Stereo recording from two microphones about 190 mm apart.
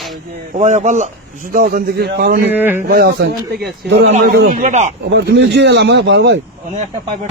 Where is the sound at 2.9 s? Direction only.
55° right (ahead or behind).